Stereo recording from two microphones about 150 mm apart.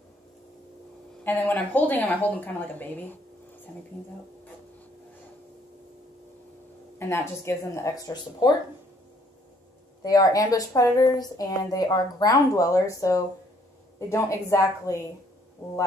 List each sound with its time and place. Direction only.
1.2 s a woman's voice: 10° left (ahead or behind)
7.0 s a woman's voice: 15° left (ahead or behind)
10.0 s a woman's voice: 25° left (ahead or behind)